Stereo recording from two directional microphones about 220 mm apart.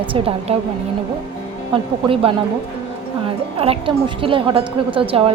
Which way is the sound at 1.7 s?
25° right (ahead or behind).